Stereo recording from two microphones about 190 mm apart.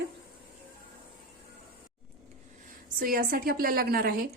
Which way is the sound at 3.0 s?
50° right (ahead or behind).